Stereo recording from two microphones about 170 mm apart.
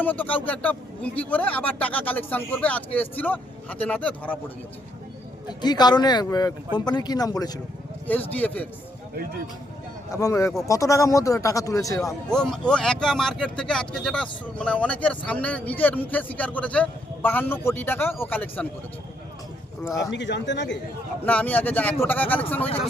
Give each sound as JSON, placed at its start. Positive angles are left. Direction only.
{"t": 0.0, "sound": "speech", "side_deg": 10}
{"t": 5.5, "sound": "speech", "side_deg": 25}
{"t": 8.0, "sound": "speech", "side_deg": 10}
{"t": 10.1, "sound": "speech", "side_deg": 20}
{"t": 12.3, "sound": "speech", "side_deg": 5}
{"t": 20.1, "sound": "speech", "side_deg": 90}
{"t": 21.2, "sound": "speech", "side_deg": 10}
{"t": 22.6, "sound": "speech", "side_deg": 35}